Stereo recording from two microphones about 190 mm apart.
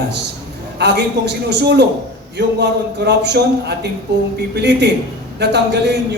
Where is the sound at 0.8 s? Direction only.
60° right (ahead or behind).